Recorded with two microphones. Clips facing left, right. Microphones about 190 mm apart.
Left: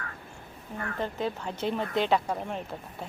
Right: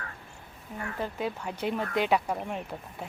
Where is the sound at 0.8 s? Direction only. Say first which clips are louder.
Left 1 dB; 10° right (ahead or behind).